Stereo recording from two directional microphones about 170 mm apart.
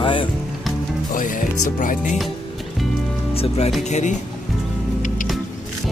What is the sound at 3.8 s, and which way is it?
Music, 45° left (ahead or behind).